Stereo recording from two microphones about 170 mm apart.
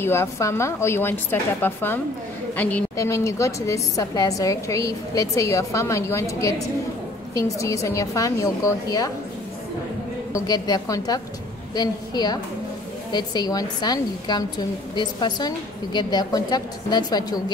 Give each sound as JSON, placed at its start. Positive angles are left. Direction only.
{"t": 0.0, "sound": "a woman's voice", "side_deg": 15}
{"t": 10.3, "sound": "a woman's voice", "side_deg": 20}